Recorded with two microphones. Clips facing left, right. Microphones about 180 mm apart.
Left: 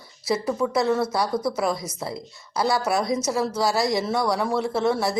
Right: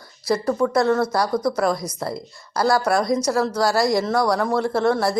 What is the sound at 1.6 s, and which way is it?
A woman's voice, 5° left (ahead or behind).